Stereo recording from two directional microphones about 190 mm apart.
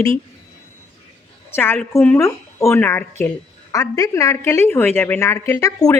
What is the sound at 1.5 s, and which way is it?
A woman's voice, 10° left (ahead or behind).